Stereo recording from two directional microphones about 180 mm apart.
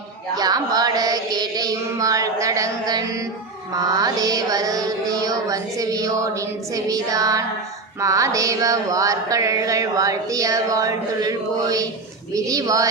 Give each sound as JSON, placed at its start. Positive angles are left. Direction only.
{"t": 0.3, "sound": "music", "side_deg": -20}